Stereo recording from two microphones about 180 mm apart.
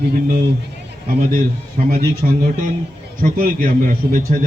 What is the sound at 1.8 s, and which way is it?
Speech, 45° right (ahead or behind).